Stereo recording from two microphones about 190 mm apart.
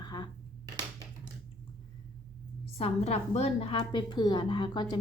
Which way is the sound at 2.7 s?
35° left (ahead or behind).